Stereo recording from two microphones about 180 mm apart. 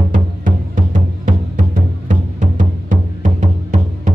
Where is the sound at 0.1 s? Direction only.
45° right (ahead or behind).